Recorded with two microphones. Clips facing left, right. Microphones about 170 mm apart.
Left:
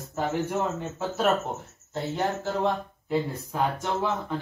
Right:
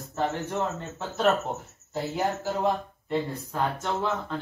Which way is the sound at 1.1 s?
Centre (ahead or behind).